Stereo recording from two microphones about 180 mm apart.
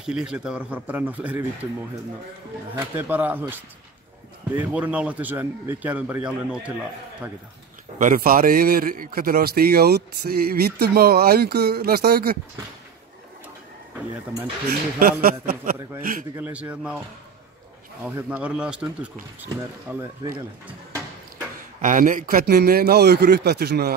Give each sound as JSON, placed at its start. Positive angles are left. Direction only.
{"t": 0.0, "sound": "a man's voice", "side_deg": -5}
{"t": 2.8, "sound": "a man's voice", "side_deg": -10}
{"t": 4.6, "sound": "a man's voice", "side_deg": -10}
{"t": 8.0, "sound": "a man's voice", "side_deg": -50}
{"t": 14.7, "sound": "a man's voice", "side_deg": -55}
{"t": 16.3, "sound": "a man's voice", "side_deg": -10}
{"t": 18.0, "sound": "a man's voice", "side_deg": -10}
{"t": 21.8, "sound": "a man's voice", "side_deg": -45}